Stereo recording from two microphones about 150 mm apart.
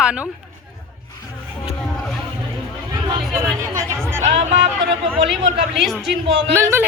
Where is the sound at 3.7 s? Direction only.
20° right (ahead or behind).